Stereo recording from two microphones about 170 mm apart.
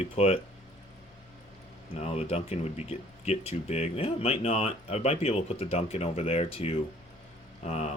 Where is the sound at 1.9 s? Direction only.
40° left (ahead or behind).